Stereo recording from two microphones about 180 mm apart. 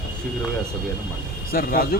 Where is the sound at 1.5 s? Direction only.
55° left (ahead or behind).